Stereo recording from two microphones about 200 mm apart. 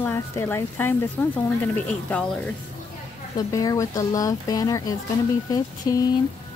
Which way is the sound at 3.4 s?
15° left (ahead or behind).